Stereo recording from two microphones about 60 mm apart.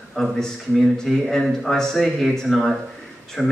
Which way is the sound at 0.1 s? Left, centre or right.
Centre.